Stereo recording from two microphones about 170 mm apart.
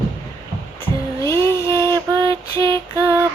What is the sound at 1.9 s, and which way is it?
Female singing, 20° right (ahead or behind).